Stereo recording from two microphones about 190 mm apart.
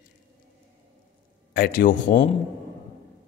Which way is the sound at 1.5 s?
50° left (ahead or behind).